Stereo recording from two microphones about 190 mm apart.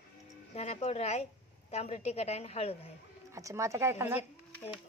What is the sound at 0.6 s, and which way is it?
A woman's voice, 35° left (ahead or behind).